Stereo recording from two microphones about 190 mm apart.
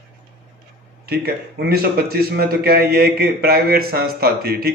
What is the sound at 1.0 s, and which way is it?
A man's voice, 55° right (ahead or behind).